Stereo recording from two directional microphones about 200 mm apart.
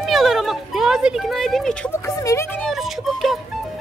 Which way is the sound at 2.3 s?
15° left (ahead or behind).